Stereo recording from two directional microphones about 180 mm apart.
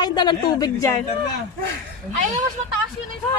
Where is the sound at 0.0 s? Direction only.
25° left (ahead or behind).